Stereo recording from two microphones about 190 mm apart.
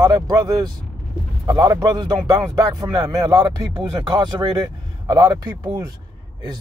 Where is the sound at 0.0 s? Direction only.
20° right (ahead or behind).